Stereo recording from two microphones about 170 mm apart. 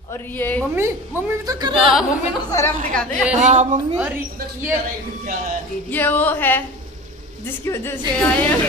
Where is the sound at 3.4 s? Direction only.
45° right (ahead or behind).